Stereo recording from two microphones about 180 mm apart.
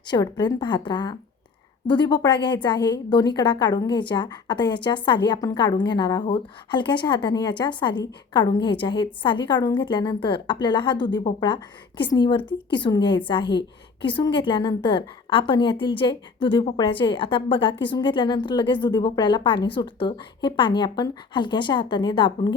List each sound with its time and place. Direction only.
0.1 s a woman's voice: 25° left (ahead or behind)